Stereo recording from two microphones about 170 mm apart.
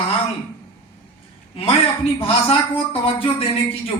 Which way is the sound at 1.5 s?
35° left (ahead or behind).